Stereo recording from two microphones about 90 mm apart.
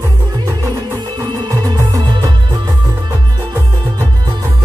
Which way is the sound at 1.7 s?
40° right (ahead or behind).